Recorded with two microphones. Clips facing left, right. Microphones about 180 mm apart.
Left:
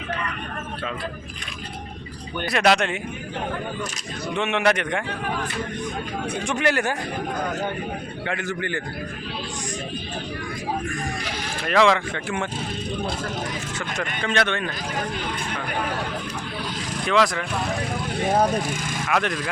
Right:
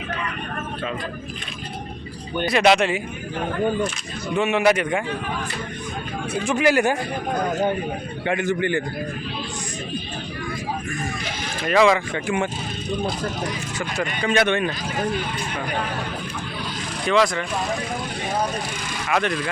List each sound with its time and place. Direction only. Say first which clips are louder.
2.5 s speech: right 3 dB; 5° right (ahead or behind)
4.4 s speech: right 3 dB; 5° right (ahead or behind)
6.3 s speech: right 5 dB; 5° right (ahead or behind)
8.3 s speech: right 6 dB; 15° right (ahead or behind)
11.6 s speech: right 2 dB; 5° right (ahead or behind)
13.7 s speech: right 4 dB; 10° right (ahead or behind)
17.1 s speech: right 2 dB; centre (ahead or behind)
19.0 s speech: right 2 dB; centre (ahead or behind)